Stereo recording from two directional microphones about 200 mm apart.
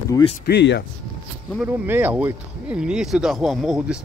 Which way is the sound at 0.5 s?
55° left (ahead or behind).